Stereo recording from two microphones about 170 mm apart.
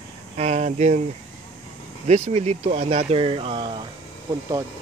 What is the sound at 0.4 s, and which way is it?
Speech, 40° right (ahead or behind).